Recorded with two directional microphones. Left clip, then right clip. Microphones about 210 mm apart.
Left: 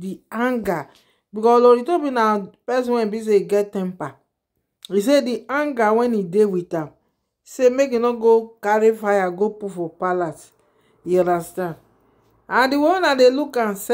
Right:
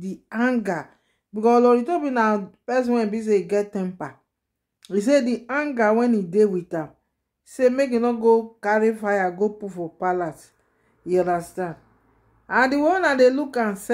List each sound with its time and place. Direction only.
0.0 s speech: 15° left (ahead or behind)